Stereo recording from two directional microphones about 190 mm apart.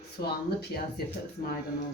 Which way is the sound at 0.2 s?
55° left (ahead or behind).